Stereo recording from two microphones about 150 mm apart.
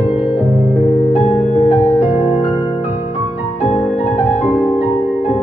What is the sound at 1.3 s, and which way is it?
Music, 45° left (ahead or behind).